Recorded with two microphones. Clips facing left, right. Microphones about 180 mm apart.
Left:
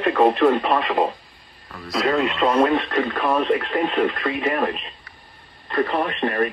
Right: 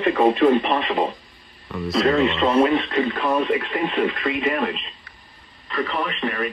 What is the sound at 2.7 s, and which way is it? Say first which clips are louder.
Speech: even; 60° left (ahead or behind).